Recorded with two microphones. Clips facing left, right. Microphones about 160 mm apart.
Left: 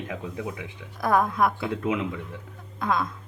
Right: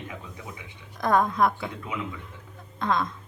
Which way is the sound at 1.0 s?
5° left (ahead or behind).